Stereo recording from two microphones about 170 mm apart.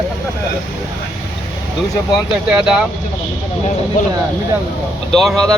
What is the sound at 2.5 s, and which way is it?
Speech, 5° right (ahead or behind).